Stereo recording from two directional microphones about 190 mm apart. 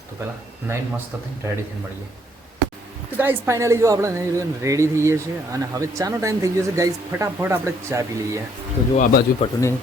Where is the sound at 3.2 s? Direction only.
10° right (ahead or behind).